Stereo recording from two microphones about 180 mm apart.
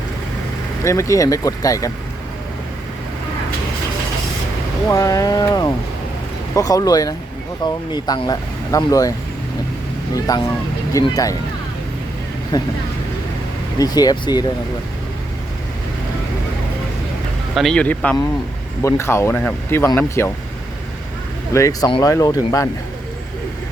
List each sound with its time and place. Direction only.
0.9 s speech: 15° left (ahead or behind)
4.9 s speech: 20° left (ahead or behind)
10.3 s speech: 20° left (ahead or behind)
12.5 s speech: 25° left (ahead or behind)
13.7 s speech: 20° left (ahead or behind)
17.5 s speech: centre (ahead or behind)
21.5 s speech: 20° left (ahead or behind)